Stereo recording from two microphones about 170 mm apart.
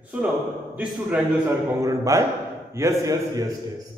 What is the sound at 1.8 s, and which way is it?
A man's voice, 20° right (ahead or behind).